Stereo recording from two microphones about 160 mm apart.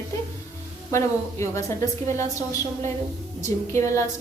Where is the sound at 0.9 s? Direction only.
20° left (ahead or behind).